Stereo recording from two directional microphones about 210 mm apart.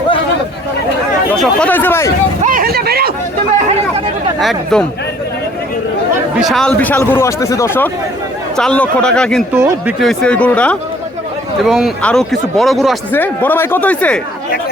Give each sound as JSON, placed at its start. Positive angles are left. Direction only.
{"t": 1.4, "sound": "speech", "side_deg": 5}
{"t": 2.4, "sound": "vehicle", "side_deg": -40}
{"t": 4.4, "sound": "speech", "side_deg": 0}
{"t": 6.3, "sound": "speech", "side_deg": 0}
{"t": 9.5, "sound": "speech", "side_deg": -10}
{"t": 10.0, "sound": "speech", "side_deg": 0}